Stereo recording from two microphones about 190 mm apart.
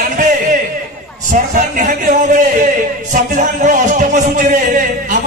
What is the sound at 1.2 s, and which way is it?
Speech, 45° right (ahead or behind).